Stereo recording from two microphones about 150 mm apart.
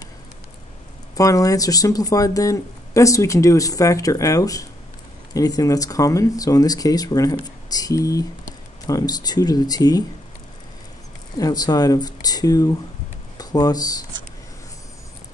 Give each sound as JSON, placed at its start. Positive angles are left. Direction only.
{"t": 1.1, "sound": "speech", "side_deg": 25}
{"t": 11.3, "sound": "speech", "side_deg": 25}